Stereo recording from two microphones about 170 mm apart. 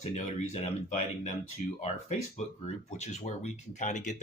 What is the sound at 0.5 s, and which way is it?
Speech, 40° left (ahead or behind).